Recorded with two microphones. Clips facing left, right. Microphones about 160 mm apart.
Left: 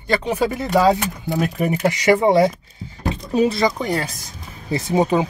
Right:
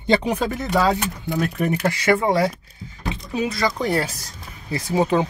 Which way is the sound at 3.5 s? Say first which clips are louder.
Left 4 dB; 25° left (ahead or behind).